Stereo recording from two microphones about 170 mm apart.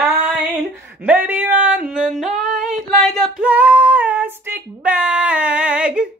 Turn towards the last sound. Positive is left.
turn(degrees=-5)  # may be behind; listen again after turning